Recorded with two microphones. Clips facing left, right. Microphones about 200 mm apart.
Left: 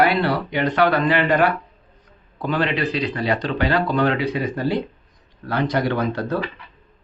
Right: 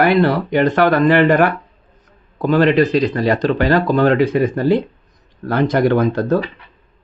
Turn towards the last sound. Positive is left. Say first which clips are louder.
# right 7 dB
turn(degrees=-45)  # may be behind; listen again after turning